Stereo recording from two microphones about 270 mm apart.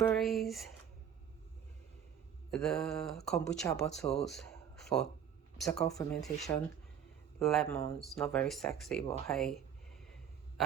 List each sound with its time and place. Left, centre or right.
0.0 s speech: centre
2.5 s speech: centre
4.9 s speech: centre
5.5 s speech: centre